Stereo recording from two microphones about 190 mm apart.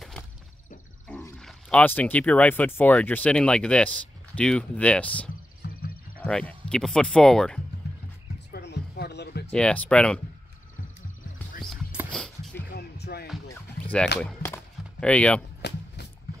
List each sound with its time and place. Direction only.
0.2 s a sound: 5° left (ahead or behind)
1.0 s speech: 5° left (ahead or behind)
5.6 s music: 55° left (ahead or behind)
6.2 s speech: 5° left (ahead or behind)
7.8 s music: 60° left (ahead or behind)
8.5 s a sound: 60° left (ahead or behind)
9.5 s speech: 5° left (ahead or behind)
11.6 s music: centre (ahead or behind)
12.1 s a sound: 5° left (ahead or behind)
12.7 s music: 60° left (ahead or behind)
14.2 s chop: 10° left (ahead or behind)
15.6 s a sound: 60° left (ahead or behind)